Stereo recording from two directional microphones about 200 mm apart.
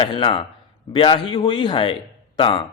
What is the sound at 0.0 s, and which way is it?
A man's voice, 25° left (ahead or behind).